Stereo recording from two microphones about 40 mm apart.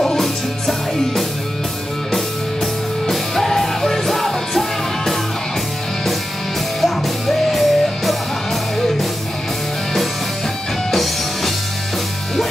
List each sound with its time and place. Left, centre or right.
0.0 s music: centre
6.8 s music: centre
10.9 s music: centre